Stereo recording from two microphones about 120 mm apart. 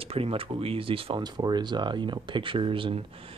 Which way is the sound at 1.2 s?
35° right (ahead or behind).